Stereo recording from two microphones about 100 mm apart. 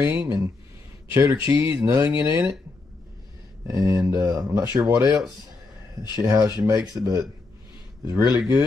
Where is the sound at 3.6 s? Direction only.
35° right (ahead or behind).